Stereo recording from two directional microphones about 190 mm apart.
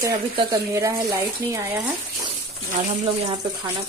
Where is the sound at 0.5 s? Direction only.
15° right (ahead or behind).